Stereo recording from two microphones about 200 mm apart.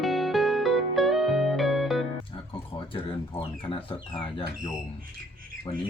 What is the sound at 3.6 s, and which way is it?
Speech, 25° left (ahead or behind).